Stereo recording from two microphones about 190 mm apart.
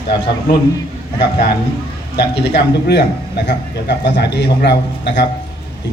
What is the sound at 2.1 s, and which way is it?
A man's voice, 60° left (ahead or behind).